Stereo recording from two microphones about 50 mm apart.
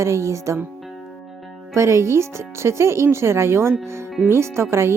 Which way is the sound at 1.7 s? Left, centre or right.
Right.